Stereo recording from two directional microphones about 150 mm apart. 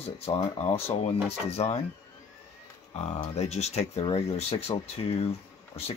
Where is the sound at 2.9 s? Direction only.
45° left (ahead or behind).